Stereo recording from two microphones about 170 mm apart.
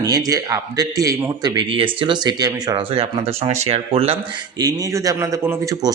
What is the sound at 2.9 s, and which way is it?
Speech, 35° right (ahead or behind).